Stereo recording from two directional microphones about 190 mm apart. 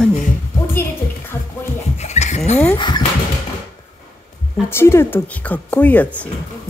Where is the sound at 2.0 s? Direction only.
35° left (ahead or behind).